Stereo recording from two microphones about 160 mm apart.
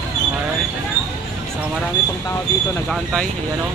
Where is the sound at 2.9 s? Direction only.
Centre (ahead or behind).